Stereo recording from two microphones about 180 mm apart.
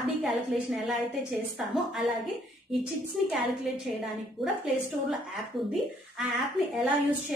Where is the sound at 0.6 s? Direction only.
5° right (ahead or behind).